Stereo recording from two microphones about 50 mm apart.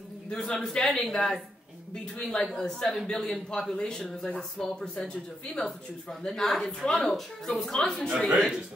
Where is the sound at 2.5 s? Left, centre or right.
Centre.